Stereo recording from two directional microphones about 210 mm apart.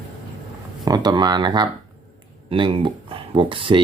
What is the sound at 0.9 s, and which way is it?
Speech, 20° right (ahead or behind).